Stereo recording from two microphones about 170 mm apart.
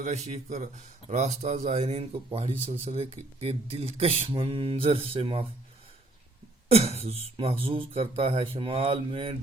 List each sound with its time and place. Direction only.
0.0 s speech: 40° right (ahead or behind)
6.7 s speech: 35° right (ahead or behind)